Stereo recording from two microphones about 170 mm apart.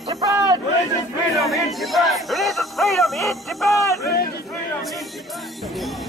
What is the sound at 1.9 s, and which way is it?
Music, centre (ahead or behind).